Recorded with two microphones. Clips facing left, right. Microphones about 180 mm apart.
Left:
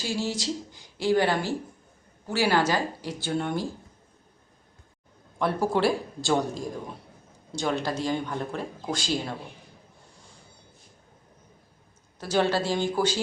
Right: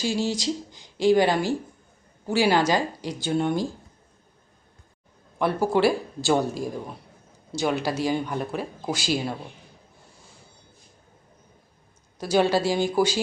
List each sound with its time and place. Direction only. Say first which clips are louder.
0.0 s speech: right 4 dB; 15° right (ahead or behind)
5.4 s speech: right 3 dB; centre (ahead or behind)
12.2 s speech: right 3 dB; 10° right (ahead or behind)